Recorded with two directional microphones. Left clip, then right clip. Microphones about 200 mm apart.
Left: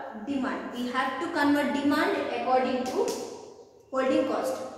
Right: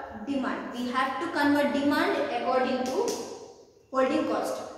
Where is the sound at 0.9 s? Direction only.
Centre (ahead or behind).